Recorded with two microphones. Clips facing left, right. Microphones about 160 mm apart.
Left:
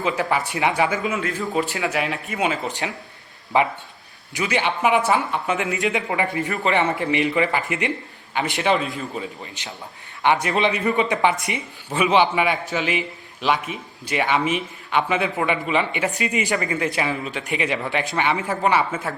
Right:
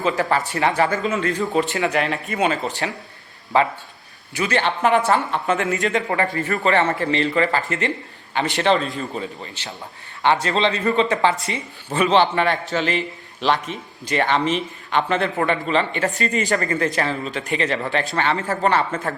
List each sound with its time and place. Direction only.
0.0 s a man's voice: 15° left (ahead or behind)
2.6 s a man's voice: 15° left (ahead or behind)